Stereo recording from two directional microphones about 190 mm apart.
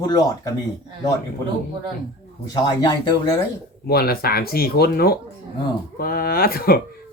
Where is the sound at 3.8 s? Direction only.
55° left (ahead or behind).